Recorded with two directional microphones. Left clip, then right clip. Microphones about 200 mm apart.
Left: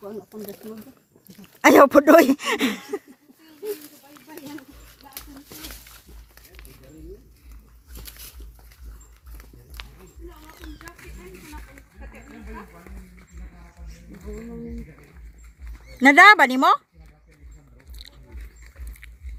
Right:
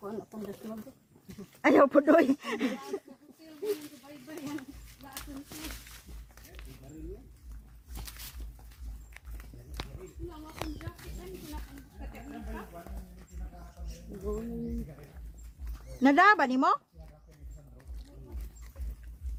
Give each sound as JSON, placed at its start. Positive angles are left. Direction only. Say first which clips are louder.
{"t": 1.6, "sound": "speech", "louder": "left 9 dB", "side_deg": 60}
{"t": 6.3, "sound": "a sound", "louder": "left 4 dB", "side_deg": 30}
{"t": 14.1, "sound": "music", "louder": "right 3 dB", "side_deg": 40}
{"t": 16.0, "sound": "speech", "louder": "left 11 dB", "side_deg": 30}